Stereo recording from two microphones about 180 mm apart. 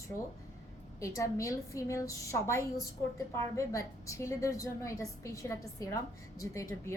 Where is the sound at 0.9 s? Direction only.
15° left (ahead or behind).